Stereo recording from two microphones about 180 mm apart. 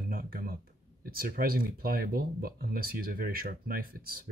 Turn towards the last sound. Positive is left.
turn(degrees=-55)  # may be behind; listen again after turning